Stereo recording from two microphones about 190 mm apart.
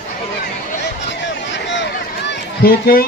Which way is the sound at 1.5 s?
70° left (ahead or behind).